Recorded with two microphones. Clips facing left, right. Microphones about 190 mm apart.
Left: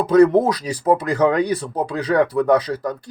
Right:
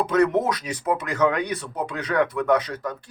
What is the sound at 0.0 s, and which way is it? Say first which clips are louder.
Speech: left 7 dB; 35° left (ahead or behind).